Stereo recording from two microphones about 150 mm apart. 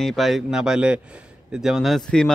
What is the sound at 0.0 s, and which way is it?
Speech, centre (ahead or behind).